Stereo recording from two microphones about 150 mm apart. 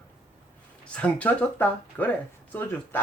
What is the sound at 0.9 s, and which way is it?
Speech, 10° left (ahead or behind).